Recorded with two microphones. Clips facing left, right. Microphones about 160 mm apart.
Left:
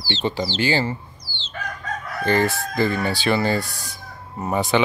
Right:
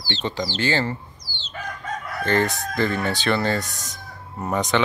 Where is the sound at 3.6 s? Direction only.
20° right (ahead or behind).